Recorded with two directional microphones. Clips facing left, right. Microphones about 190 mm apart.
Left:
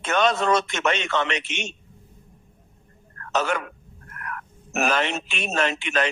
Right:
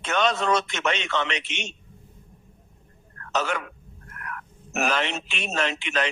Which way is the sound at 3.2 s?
50° left (ahead or behind).